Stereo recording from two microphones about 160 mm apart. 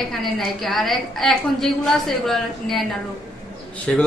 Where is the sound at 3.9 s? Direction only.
5° left (ahead or behind).